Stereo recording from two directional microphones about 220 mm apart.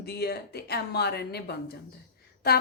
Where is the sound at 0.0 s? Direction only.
45° left (ahead or behind).